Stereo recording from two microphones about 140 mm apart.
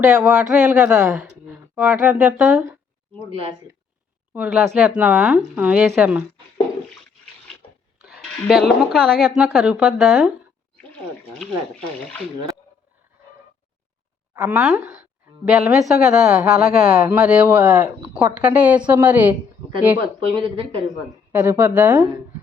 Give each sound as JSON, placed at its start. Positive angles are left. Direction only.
{"t": 0.0, "sound": "a woman's voice", "side_deg": -5}
{"t": 4.4, "sound": "a woman's voice", "side_deg": -5}
{"t": 8.4, "sound": "a woman's voice", "side_deg": 0}
{"t": 14.3, "sound": "a woman's voice", "side_deg": -10}
{"t": 20.1, "sound": "speech", "side_deg": -40}
{"t": 21.3, "sound": "speech", "side_deg": -15}